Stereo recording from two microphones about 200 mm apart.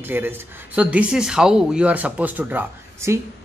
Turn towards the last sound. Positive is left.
turn(degrees=-15)  # may be behind; listen again after turning